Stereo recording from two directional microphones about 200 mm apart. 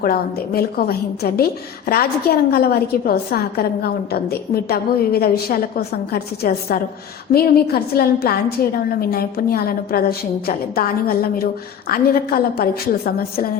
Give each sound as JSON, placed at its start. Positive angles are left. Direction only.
{"t": 0.0, "sound": "a woman's voice", "side_deg": 50}
{"t": 2.5, "sound": "a woman's voice", "side_deg": 50}